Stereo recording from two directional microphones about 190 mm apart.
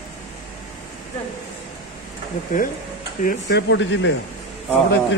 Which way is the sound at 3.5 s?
65° left (ahead or behind).